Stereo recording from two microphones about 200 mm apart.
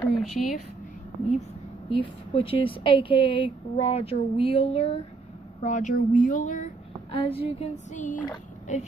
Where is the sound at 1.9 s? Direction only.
25° left (ahead or behind).